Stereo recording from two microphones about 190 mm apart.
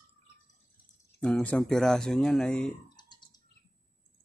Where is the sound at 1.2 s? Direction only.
5° left (ahead or behind).